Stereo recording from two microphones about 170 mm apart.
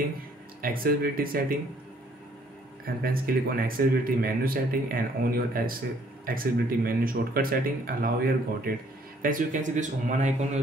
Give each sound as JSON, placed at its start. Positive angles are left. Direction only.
{"t": 0.6, "sound": "speech", "side_deg": -60}
{"t": 2.8, "sound": "speech", "side_deg": -60}